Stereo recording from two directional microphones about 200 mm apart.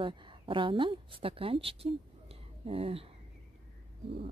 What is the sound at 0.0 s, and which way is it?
Speech, 25° right (ahead or behind).